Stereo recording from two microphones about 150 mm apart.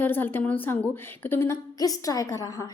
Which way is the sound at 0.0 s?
15° left (ahead or behind).